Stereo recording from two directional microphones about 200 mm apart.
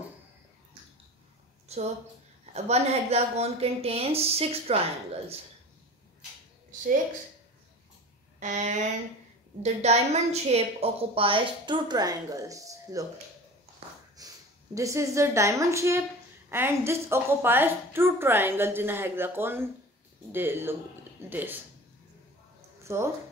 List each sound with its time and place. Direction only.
1.7 s a sound: 35° right (ahead or behind)
2.5 s a woman's voice: 30° right (ahead or behind)
8.4 s a woman's voice: 35° right (ahead or behind); by 13.0 s 15° right (ahead or behind)
14.1 s a woman's voice: 15° right (ahead or behind)
22.9 s a woman's voice: 15° right (ahead or behind)